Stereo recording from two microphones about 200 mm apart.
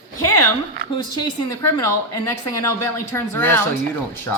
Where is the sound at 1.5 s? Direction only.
15° left (ahead or behind).